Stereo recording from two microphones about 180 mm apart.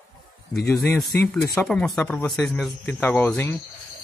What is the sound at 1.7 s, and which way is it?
Speech, 5° left (ahead or behind).